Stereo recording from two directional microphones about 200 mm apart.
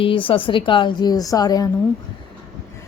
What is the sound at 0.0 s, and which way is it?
A woman's voice, 25° left (ahead or behind).